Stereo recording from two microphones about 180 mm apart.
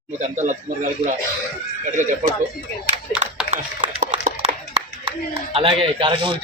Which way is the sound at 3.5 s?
40° right (ahead or behind).